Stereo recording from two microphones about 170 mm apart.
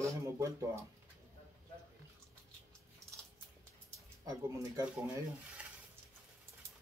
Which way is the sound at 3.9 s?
20° right (ahead or behind).